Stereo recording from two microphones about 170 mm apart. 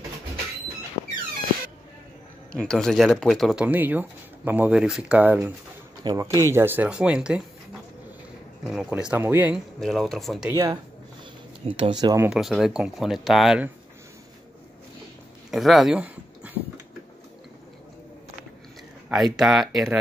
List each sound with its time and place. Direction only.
2.5 s speech: 5° left (ahead or behind)
8.6 s speech: 5° right (ahead or behind)
9.8 s speech: centre (ahead or behind)
10.5 s speech: 20° right (ahead or behind)
12.3 s speech: centre (ahead or behind)
15.5 s speech: centre (ahead or behind)
19.0 s speech: centre (ahead or behind)